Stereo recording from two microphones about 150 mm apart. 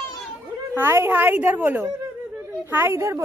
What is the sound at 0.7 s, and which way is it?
A woman's voice, 15° right (ahead or behind).